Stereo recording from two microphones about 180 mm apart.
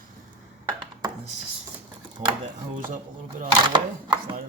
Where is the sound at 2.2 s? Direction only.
40° right (ahead or behind).